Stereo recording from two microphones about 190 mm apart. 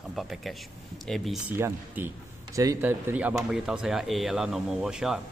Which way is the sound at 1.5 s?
10° right (ahead or behind).